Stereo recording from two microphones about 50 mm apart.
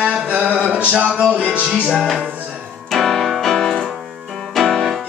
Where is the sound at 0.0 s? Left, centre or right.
Right.